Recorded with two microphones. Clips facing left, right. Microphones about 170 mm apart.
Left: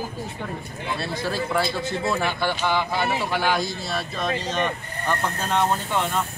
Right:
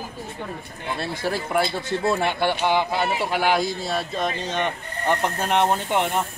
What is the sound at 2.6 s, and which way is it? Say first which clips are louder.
Speech: right 2 dB; 15° right (ahead or behind).